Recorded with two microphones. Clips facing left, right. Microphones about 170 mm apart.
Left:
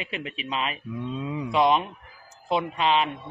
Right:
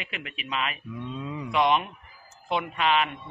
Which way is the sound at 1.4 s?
30° left (ahead or behind).